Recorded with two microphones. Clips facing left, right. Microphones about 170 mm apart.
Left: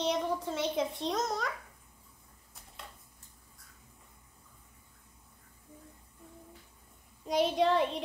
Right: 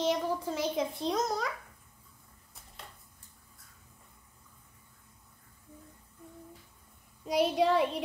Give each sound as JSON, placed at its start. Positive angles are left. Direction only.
{"t": 0.0, "sound": "a child's voice", "side_deg": 0}
{"t": 7.2, "sound": "a child's voice", "side_deg": 0}